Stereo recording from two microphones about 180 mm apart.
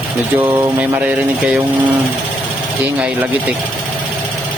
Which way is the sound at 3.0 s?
10° right (ahead or behind).